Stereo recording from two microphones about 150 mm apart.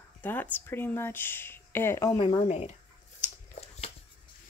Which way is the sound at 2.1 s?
40° left (ahead or behind).